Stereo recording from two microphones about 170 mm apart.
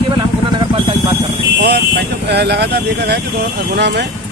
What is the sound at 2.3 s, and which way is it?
Speech, 75° right (ahead or behind).